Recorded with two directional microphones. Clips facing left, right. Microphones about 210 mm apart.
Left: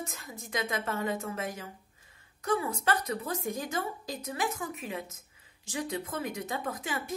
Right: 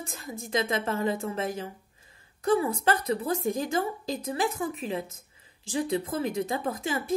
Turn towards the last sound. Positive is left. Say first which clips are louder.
# right 5 dB
turn(degrees=-30)  # may be behind; listen again after turning